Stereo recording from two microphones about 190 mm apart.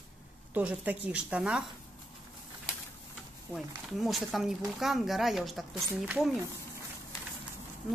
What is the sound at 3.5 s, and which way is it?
A woman's voice, centre (ahead or behind).